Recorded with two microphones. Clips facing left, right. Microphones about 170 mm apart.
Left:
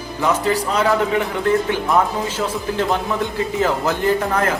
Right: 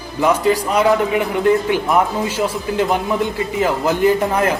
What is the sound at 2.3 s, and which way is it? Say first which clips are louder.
A man's voice: right 4 dB; 10° right (ahead or behind).